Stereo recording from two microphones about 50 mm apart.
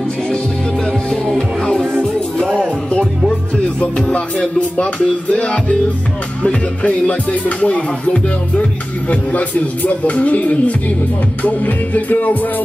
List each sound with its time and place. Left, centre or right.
1.2 s music: centre; by 5.8 s left
6.4 s speech: left
11.4 s music: left